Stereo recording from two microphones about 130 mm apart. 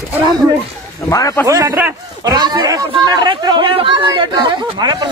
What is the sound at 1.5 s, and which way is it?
Speech, 20° right (ahead or behind).